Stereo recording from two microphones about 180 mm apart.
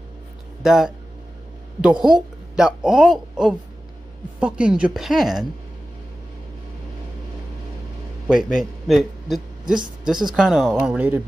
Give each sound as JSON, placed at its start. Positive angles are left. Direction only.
{"t": 0.6, "sound": "a woman's voice", "side_deg": 0}
{"t": 8.3, "sound": "a man's voice", "side_deg": -5}